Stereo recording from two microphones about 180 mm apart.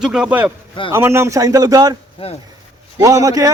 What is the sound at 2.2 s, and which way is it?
Speech, 30° left (ahead or behind).